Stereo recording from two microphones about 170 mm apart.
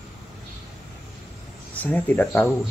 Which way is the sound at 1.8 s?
10° left (ahead or behind).